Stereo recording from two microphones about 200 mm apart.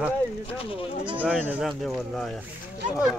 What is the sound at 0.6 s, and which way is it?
Speech, 25° left (ahead or behind).